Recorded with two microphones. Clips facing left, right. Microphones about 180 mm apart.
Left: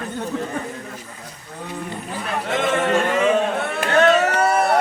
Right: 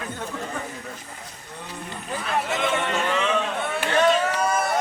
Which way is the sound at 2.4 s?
50° left (ahead or behind).